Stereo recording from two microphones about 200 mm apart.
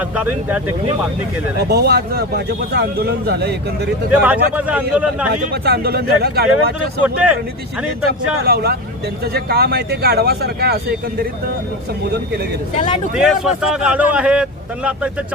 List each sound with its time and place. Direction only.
0.2 s a man's voice: 5° right (ahead or behind)
1.7 s speech: 55° right (ahead or behind)
4.1 s a man's voice: 5° right (ahead or behind)
5.6 s speech: 55° right (ahead or behind)
7.0 s a man's voice: 5° right (ahead or behind)
8.4 s speech: 50° right (ahead or behind)
13.1 s a man's voice: 5° right (ahead or behind)